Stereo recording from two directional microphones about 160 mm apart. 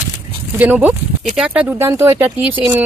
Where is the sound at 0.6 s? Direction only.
10° right (ahead or behind).